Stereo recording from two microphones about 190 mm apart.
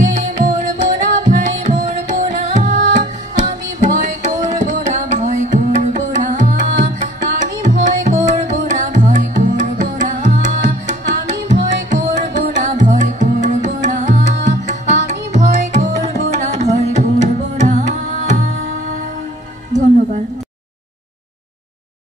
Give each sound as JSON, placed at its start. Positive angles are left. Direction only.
{"t": 0.0, "sound": "music", "side_deg": -40}
{"t": 3.3, "sound": "tabla", "side_deg": -40}
{"t": 7.0, "sound": "music", "side_deg": -40}